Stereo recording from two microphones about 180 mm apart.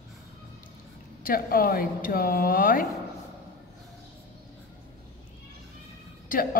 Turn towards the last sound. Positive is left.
turn(degrees=50)  # may be behind; listen again after turning